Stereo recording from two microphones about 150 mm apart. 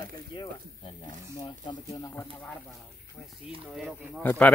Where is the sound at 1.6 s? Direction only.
20° left (ahead or behind).